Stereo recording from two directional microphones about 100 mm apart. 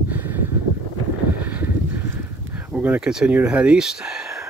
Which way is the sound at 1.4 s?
15° right (ahead or behind).